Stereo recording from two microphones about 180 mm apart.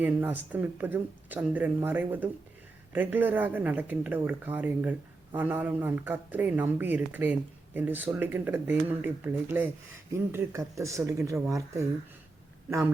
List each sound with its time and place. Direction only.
0.0 s speech: 10° right (ahead or behind)